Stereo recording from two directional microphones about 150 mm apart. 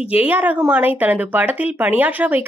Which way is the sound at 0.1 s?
10° right (ahead or behind).